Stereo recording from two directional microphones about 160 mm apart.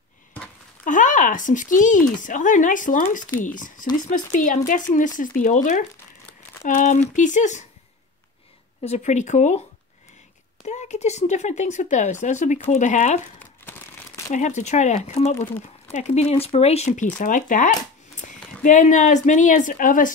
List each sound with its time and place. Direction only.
0.8 s speech: 55° left (ahead or behind)
8.8 s speech: 45° left (ahead or behind)
10.6 s speech: 45° left (ahead or behind)
14.3 s speech: 50° left (ahead or behind)